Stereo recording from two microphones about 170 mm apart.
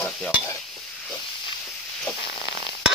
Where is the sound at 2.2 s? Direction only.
30° left (ahead or behind).